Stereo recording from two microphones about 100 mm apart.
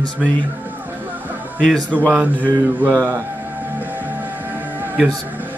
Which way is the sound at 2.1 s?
15° right (ahead or behind).